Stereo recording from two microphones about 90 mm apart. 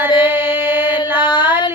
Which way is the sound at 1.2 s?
55° left (ahead or behind).